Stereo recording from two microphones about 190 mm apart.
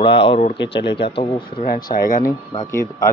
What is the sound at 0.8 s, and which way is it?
Speech, 65° left (ahead or behind).